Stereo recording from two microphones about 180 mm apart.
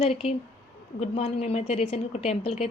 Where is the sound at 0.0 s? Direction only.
35° left (ahead or behind).